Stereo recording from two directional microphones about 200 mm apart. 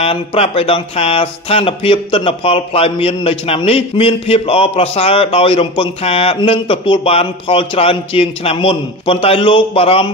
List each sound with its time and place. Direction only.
0.0 s speech: 30° left (ahead or behind)